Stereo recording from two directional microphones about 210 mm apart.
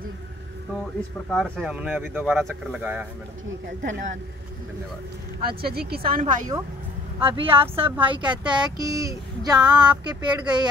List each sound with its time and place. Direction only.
1.3 s speech: centre (ahead or behind)
5.4 s speech: 45° right (ahead or behind)
7.2 s speech: 25° right (ahead or behind)